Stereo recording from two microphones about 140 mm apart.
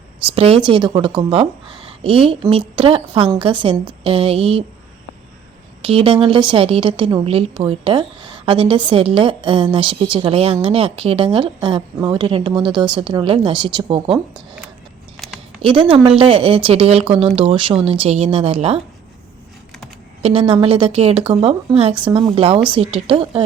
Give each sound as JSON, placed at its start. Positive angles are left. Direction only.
{"t": 0.3, "sound": "a woman's voice", "side_deg": -40}
{"t": 5.8, "sound": "a woman's voice", "side_deg": -40}
{"t": 15.6, "sound": "a woman's voice", "side_deg": -35}
{"t": 20.2, "sound": "a woman's voice", "side_deg": -45}